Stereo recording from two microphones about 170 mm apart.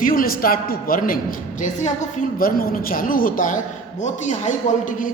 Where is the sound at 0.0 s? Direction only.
55° left (ahead or behind).